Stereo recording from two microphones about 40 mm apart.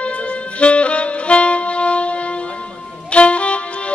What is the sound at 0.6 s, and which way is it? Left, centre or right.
Saxophone, left.